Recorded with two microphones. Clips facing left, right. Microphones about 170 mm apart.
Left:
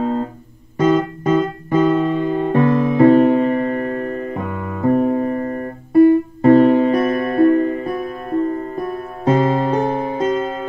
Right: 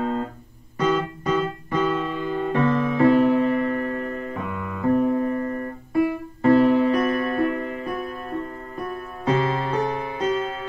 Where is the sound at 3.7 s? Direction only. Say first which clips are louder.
Left 5 dB; 50° left (ahead or behind).